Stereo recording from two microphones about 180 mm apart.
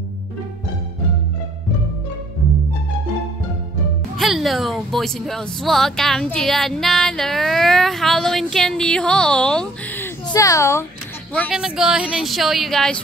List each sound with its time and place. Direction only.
4.2 s speech: centre (ahead or behind)
10.2 s a woman's voice: 20° left (ahead or behind)
11.4 s speech: 5° right (ahead or behind)